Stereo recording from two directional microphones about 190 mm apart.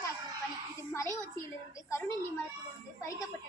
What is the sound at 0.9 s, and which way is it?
Speech, 15° left (ahead or behind).